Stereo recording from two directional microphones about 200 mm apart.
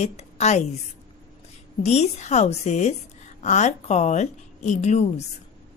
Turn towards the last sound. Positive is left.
turn(degrees=35)  # may be behind; listen again after turning